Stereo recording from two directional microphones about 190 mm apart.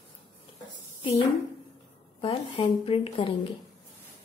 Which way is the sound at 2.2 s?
35° left (ahead or behind).